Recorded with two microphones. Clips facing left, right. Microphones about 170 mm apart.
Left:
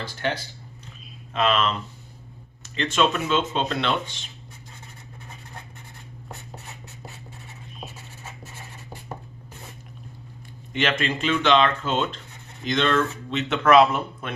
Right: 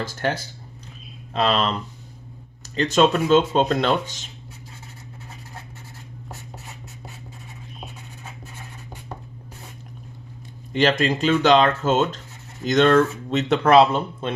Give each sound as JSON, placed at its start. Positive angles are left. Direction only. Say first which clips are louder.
{"t": 0.0, "sound": "speech", "louder": "right 3 dB", "side_deg": -45}
{"t": 10.7, "sound": "speech", "louder": "right 5 dB", "side_deg": -35}